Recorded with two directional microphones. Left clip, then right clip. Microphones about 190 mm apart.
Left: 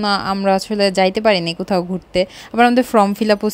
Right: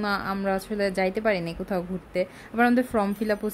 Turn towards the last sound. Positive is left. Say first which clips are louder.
# left 11 dB
turn(degrees=35)  # may be behind; listen again after turning